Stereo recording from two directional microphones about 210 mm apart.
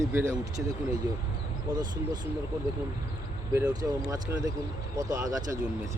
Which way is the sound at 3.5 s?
15° right (ahead or behind).